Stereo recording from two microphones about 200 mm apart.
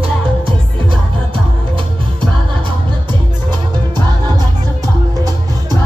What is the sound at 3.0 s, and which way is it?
Music, 20° right (ahead or behind).